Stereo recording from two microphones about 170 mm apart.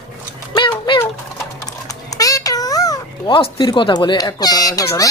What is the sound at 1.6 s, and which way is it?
Typing, 20° left (ahead or behind).